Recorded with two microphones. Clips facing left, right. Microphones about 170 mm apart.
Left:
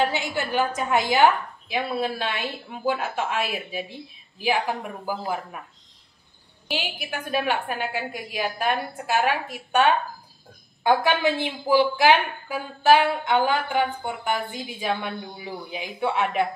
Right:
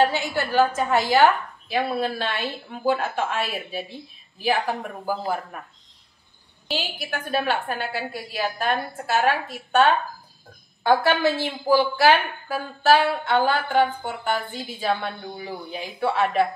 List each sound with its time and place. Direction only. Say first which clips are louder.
0.0 s a woman's voice: right 3 dB; 15° left (ahead or behind)
6.7 s a woman's voice: right 1 dB; 15° left (ahead or behind)